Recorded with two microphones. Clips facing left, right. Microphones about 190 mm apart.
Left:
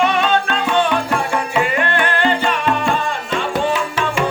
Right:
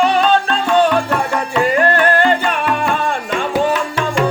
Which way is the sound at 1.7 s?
40° right (ahead or behind).